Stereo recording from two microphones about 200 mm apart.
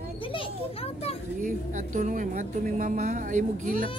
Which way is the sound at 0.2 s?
25° left (ahead or behind).